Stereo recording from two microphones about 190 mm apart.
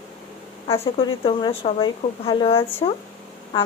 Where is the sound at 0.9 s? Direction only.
25° left (ahead or behind).